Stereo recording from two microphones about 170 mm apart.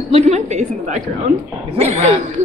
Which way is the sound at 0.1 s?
40° right (ahead or behind).